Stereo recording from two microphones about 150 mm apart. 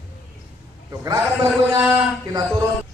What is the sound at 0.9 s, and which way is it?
A man's voice, 25° right (ahead or behind).